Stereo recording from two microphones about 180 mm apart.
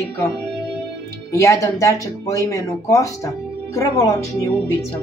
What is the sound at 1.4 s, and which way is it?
Speech, 15° left (ahead or behind).